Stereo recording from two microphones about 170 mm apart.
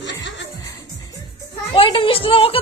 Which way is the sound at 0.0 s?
90° left.